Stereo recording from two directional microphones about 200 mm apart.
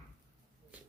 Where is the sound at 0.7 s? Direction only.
5° right (ahead or behind).